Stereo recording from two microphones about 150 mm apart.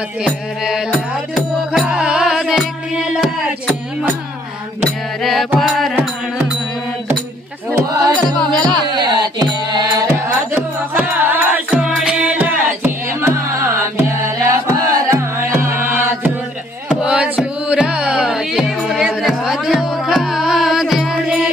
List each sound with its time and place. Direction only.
0.2 s music: 5° right (ahead or behind)
7.7 s music: 25° right (ahead or behind)
8.0 s music: 5° left (ahead or behind)
8.9 s music: 30° right (ahead or behind)
10.5 s music: 15° right (ahead or behind)